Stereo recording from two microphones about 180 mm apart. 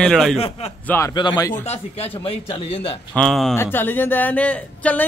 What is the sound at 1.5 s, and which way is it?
Speech, 35° left (ahead or behind).